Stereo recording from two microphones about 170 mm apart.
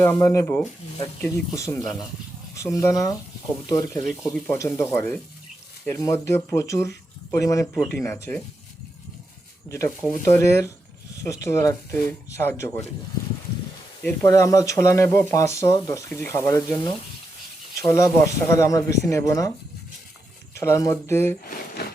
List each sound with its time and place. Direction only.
0.0 s speech: 15° left (ahead or behind)
9.6 s speech: 20° left (ahead or behind)
14.3 s speech: 20° left (ahead or behind)
20.6 s speech: 15° left (ahead or behind)
21.8 s a sound: 75° left (ahead or behind)